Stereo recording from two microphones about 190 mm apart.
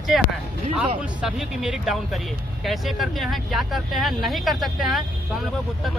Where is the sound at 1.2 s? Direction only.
5° right (ahead or behind).